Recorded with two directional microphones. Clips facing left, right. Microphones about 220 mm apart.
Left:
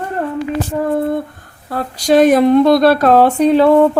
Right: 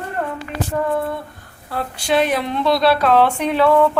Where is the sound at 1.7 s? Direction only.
40° left (ahead or behind).